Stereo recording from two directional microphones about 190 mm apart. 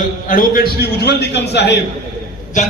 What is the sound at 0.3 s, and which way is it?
A man's voice, 50° left (ahead or behind).